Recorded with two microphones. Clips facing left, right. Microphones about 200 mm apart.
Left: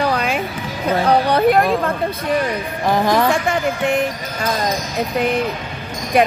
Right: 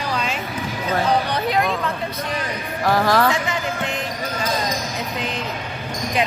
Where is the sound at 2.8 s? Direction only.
20° left (ahead or behind).